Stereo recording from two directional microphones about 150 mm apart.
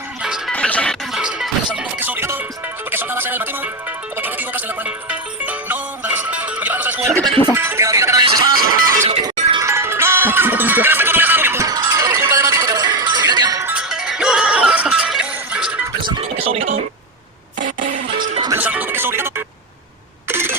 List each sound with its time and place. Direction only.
0.2 s music: 5° right (ahead or behind)
0.5 s music: 10° left (ahead or behind)
1.1 s music: 5° right (ahead or behind)
7.1 s music: 5° left (ahead or behind)
7.5 s music: 15° right (ahead or behind)
8.2 s music: 30° right (ahead or behind)
8.5 s music: 75° right (ahead or behind)
9.6 s music: 20° right (ahead or behind)
13.7 s music: 5° right (ahead or behind)
16.0 s music: 35° right (ahead or behind)
17.6 s music: 60° right (ahead or behind)
18.4 s music: 15° right (ahead or behind)
20.2 s camera: 15° right (ahead or behind)